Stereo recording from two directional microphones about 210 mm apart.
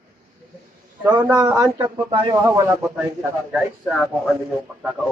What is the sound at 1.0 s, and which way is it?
A man's voice, 20° right (ahead or behind).